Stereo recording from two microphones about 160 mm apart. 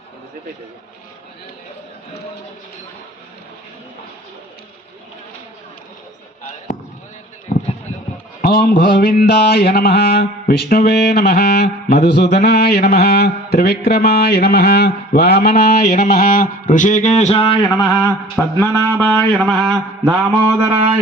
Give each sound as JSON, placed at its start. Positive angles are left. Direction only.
{"t": 8.4, "sound": "mantra", "side_deg": 70}
{"t": 18.3, "sound": "speech", "side_deg": 15}
{"t": 18.8, "sound": "mantra", "side_deg": 10}
{"t": 20.6, "sound": "mantra", "side_deg": -10}